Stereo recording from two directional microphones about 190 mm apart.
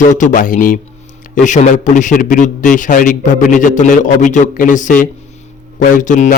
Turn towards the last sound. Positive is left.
turn(degrees=40)  # may be behind; listen again after turning